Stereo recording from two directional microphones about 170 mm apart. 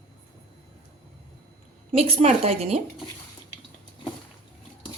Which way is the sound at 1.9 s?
35° right (ahead or behind).